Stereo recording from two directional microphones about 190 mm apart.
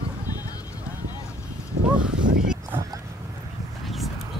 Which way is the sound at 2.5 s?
10° right (ahead or behind).